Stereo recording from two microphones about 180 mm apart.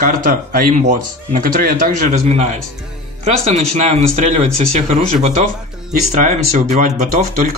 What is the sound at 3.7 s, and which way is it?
Speech, 40° right (ahead or behind).